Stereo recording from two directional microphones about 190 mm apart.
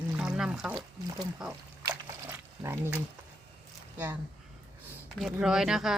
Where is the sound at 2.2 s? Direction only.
15° right (ahead or behind).